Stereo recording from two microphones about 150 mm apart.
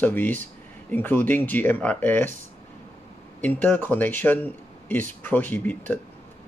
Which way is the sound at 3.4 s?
10° left (ahead or behind).